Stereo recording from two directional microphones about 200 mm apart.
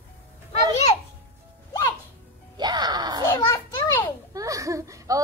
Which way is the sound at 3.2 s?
15° left (ahead or behind).